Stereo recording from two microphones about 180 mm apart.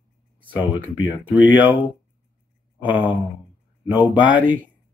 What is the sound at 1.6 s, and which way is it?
Speech, 30° left (ahead or behind).